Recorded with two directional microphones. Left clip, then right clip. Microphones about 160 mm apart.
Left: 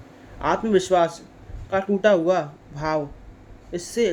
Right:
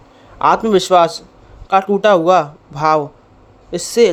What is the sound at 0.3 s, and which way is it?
Speech, 35° right (ahead or behind).